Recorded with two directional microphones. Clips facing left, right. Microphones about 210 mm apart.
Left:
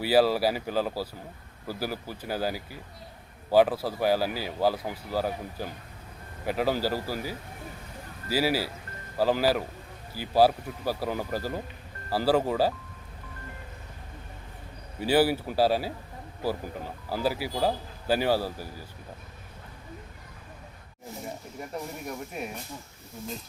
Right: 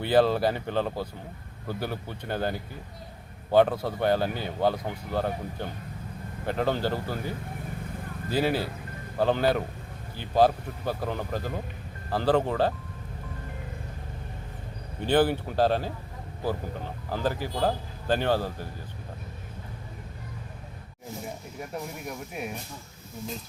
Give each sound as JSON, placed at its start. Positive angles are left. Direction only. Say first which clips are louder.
{"t": 0.0, "sound": "speech", "louder": "even", "side_deg": 5}
{"t": 15.0, "sound": "speech", "louder": "even", "side_deg": 10}
{"t": 22.0, "sound": "speech", "louder": "even", "side_deg": 0}